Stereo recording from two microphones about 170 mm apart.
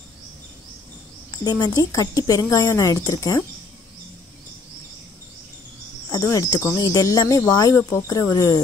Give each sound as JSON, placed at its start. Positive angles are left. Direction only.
{"t": 1.4, "sound": "speech", "side_deg": 25}
{"t": 6.1, "sound": "speech", "side_deg": 20}